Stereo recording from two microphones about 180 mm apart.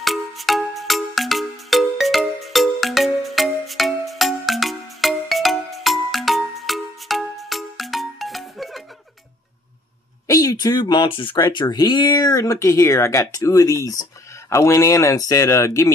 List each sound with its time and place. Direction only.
0.0 s music: centre (ahead or behind)
10.2 s speech: 20° left (ahead or behind)